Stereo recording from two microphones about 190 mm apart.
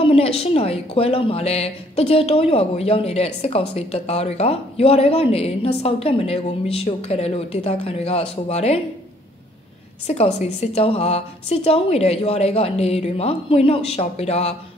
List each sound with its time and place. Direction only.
0.0 s speech: 30° left (ahead or behind)
10.0 s speech: 35° left (ahead or behind)